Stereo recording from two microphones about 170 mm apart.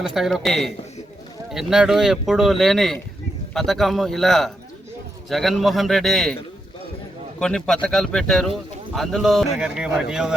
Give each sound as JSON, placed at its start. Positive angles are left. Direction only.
{"t": 0.0, "sound": "speech", "side_deg": 0}
{"t": 7.3, "sound": "speech", "side_deg": 5}